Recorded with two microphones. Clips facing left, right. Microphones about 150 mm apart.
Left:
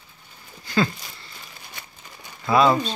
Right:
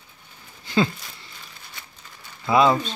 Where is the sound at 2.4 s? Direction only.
20° right (ahead or behind).